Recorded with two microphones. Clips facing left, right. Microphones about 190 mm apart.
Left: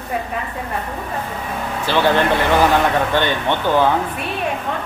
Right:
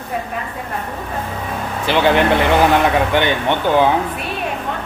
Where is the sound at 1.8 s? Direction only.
15° right (ahead or behind).